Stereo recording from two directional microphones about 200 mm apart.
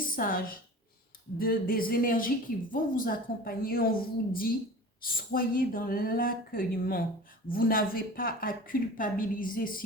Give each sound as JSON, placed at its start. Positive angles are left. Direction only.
{"t": 0.2, "sound": "speech", "side_deg": 45}